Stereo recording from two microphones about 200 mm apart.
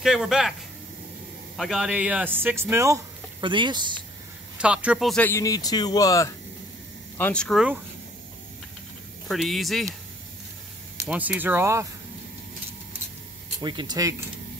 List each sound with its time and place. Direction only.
0.0 s speech: centre (ahead or behind)
1.6 s speech: centre (ahead or behind); by 3.8 s 25° right (ahead or behind)
4.6 s a man's voice: 5° right (ahead or behind)
9.3 s speech: centre (ahead or behind)
11.1 s speech: 10° right (ahead or behind)
13.6 s speech: 20° right (ahead or behind)